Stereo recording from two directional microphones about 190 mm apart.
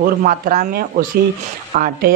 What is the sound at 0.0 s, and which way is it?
Speech, 45° right (ahead or behind).